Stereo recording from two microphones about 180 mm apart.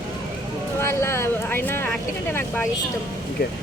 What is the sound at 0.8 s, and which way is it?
Speech, 15° left (ahead or behind).